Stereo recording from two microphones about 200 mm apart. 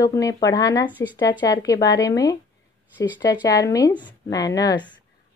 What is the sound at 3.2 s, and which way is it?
A woman's voice, 20° left (ahead or behind).